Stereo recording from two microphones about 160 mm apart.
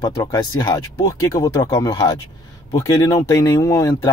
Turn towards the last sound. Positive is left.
turn(degrees=20)  # may be behind; listen again after turning